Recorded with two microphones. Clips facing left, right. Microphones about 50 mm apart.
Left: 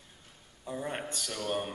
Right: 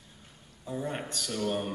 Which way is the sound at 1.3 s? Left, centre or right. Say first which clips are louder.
Right 3 dB; centre.